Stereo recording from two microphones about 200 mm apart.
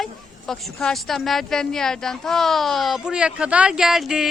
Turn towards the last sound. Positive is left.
turn(degrees=0)  # may be behind; listen again after turning